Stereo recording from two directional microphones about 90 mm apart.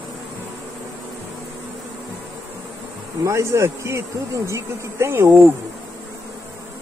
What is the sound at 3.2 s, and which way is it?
Speech, 30° right (ahead or behind).